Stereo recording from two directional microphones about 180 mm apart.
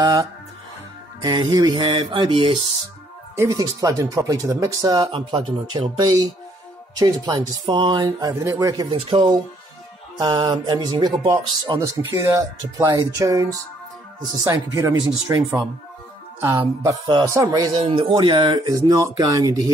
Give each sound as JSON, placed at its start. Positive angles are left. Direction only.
{"t": 0.0, "sound": "speech", "side_deg": -25}
{"t": 3.3, "sound": "speech", "side_deg": -20}